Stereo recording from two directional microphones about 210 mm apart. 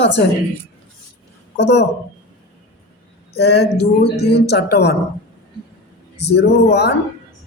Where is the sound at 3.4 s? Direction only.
50° left (ahead or behind).